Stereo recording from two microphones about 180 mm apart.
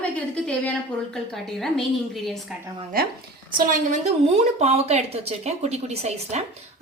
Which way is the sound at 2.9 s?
55° right (ahead or behind).